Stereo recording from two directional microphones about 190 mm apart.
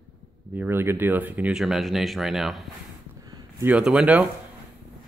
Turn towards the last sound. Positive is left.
turn(degrees=-5)  # may be behind; listen again after turning